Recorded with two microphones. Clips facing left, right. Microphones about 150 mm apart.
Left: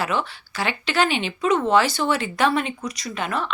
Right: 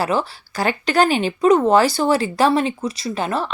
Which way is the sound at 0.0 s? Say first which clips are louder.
Right 4 dB; 35° right (ahead or behind).